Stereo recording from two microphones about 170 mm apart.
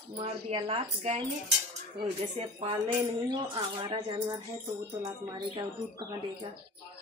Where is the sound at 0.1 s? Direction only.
40° right (ahead or behind).